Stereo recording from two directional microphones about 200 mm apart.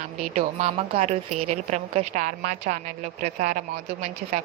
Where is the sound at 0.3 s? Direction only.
35° right (ahead or behind).